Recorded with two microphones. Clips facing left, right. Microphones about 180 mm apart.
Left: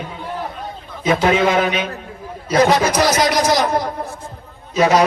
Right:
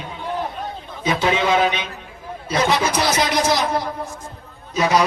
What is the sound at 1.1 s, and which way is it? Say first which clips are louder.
Speech: left 4 dB; 45° left (ahead or behind).